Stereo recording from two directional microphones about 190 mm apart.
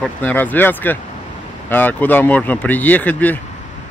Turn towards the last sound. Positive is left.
turn(degrees=10)  # may be behind; listen again after turning